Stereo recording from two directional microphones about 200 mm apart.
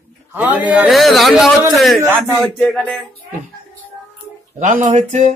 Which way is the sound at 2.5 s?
5° left (ahead or behind).